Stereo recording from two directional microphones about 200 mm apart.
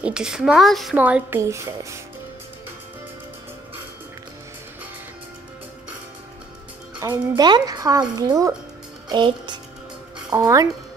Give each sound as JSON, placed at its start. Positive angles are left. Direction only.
{"t": 0.0, "sound": "a woman's voice", "side_deg": -5}
{"t": 7.0, "sound": "speech", "side_deg": -15}